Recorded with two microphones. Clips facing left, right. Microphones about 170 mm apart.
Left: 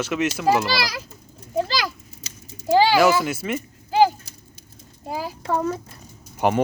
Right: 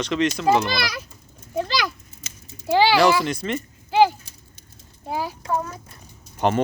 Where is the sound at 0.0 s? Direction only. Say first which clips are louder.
Right 1 dB; 5° left (ahead or behind).